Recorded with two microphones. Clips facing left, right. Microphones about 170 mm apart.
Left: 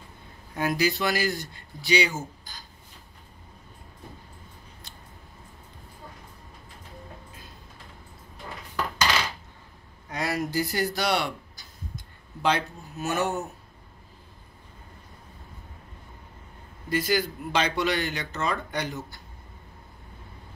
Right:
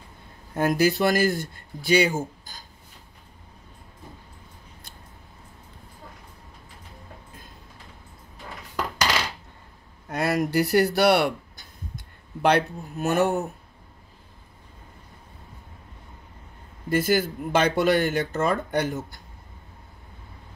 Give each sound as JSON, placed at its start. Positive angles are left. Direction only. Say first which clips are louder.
{"t": 0.6, "sound": "speech", "louder": "right 5 dB", "side_deg": -50}
{"t": 10.0, "sound": "speech", "louder": "right 5 dB", "side_deg": -55}
{"t": 16.9, "sound": "speech", "louder": "right 4 dB", "side_deg": -50}